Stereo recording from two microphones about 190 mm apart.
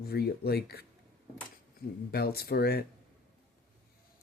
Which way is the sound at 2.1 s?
55° left (ahead or behind).